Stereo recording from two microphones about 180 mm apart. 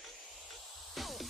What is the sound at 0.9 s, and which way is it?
Music, centre (ahead or behind).